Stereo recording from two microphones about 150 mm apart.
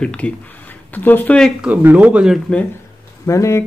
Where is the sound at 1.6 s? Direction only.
10° right (ahead or behind).